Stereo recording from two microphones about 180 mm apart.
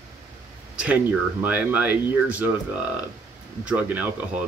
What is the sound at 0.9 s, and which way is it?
Speech, 10° right (ahead or behind).